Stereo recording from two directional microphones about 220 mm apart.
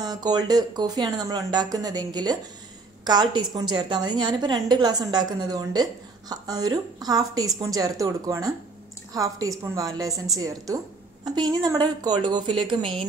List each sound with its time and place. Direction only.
0.0 s a woman's voice: 20° right (ahead or behind)